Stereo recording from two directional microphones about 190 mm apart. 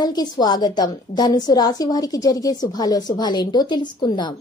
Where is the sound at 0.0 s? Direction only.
20° left (ahead or behind).